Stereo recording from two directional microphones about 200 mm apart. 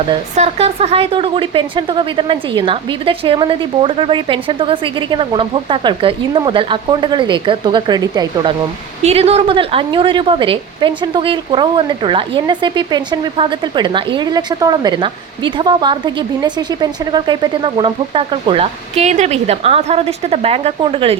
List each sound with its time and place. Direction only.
0.3 s a woman's voice: 30° right (ahead or behind)
9.0 s a woman's voice: 30° right (ahead or behind)